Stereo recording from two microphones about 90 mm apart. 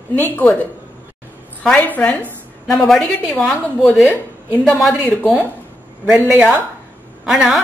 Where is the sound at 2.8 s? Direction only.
5° left (ahead or behind).